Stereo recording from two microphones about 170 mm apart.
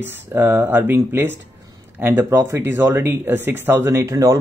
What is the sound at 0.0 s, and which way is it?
Speech, 10° right (ahead or behind).